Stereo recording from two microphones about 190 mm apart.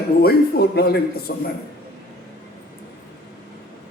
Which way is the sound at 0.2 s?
55° left (ahead or behind).